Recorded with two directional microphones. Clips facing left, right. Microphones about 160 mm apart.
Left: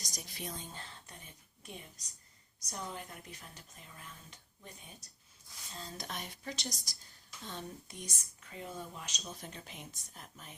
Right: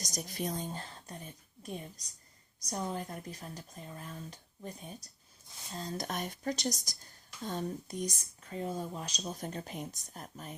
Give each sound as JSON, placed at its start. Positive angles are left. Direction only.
{"t": 0.0, "sound": "a woman's voice", "side_deg": -45}